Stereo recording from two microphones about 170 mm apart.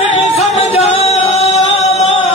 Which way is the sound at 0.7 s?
40° left (ahead or behind).